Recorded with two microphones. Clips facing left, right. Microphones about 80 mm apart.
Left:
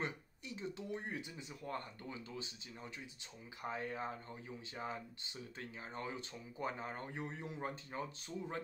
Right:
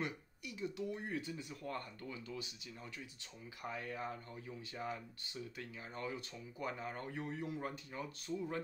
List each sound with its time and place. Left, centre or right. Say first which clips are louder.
0.0 s speech: even; left